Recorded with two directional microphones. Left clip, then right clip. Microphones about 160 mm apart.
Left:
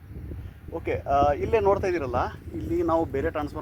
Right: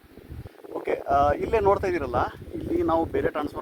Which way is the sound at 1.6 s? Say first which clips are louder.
Right 1 dB; 25° left (ahead or behind).